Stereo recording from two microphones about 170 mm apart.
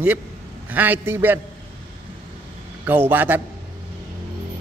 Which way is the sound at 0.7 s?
10° right (ahead or behind).